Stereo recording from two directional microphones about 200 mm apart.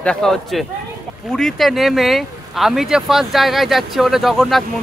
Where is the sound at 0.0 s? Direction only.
5° left (ahead or behind).